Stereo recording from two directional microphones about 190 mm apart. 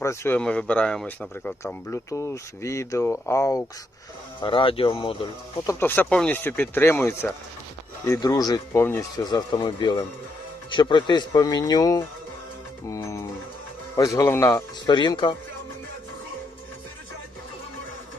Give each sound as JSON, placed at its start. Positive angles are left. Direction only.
{"t": 0.0, "sound": "speech", "side_deg": 15}
{"t": 4.4, "sound": "speech", "side_deg": 25}
{"t": 5.8, "sound": "speech", "side_deg": 10}